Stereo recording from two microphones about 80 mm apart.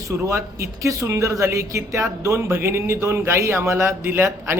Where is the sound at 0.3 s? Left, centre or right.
Right.